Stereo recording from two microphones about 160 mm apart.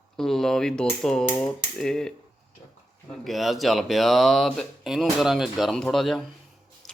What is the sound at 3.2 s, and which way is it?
Speech, centre (ahead or behind).